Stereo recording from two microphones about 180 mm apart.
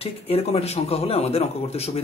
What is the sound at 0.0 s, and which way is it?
Speech, 35° left (ahead or behind).